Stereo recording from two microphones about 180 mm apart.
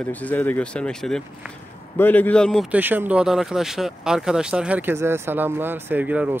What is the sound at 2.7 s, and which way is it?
Speech, 10° right (ahead or behind).